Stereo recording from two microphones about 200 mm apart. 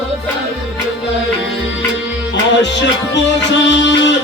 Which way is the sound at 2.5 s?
65° left (ahead or behind).